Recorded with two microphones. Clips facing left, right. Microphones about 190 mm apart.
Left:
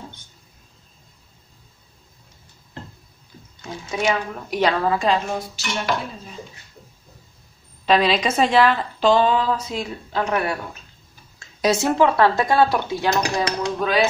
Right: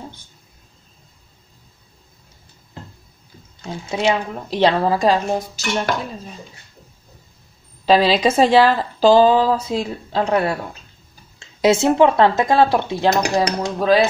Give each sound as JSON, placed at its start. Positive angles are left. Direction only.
{"t": 3.9, "sound": "speech", "side_deg": -25}
{"t": 7.8, "sound": "a woman's voice", "side_deg": -30}